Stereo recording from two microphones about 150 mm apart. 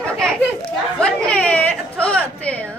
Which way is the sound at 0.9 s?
10° left (ahead or behind).